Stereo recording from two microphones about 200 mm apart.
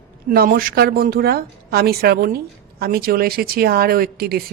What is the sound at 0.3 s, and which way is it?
Speech, 45° right (ahead or behind).